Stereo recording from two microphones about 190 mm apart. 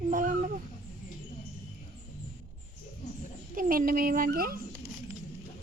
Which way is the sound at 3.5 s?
45° right (ahead or behind).